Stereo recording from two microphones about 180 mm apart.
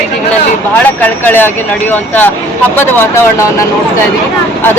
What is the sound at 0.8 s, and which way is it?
Speech, 10° left (ahead or behind).